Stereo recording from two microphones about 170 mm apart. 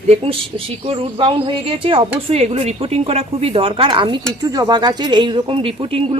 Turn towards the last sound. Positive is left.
turn(degrees=-35)  # may be behind; listen again after turning